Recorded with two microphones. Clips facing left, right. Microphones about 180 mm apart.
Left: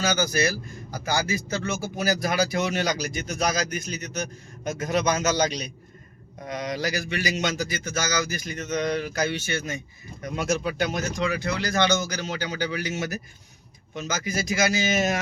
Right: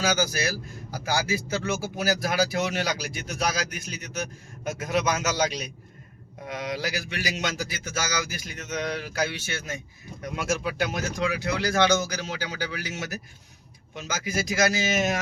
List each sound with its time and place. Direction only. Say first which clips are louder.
0.0 s speech: left 2 dB; 5° right (ahead or behind)
13.9 s speech: left 1 dB; 5° right (ahead or behind)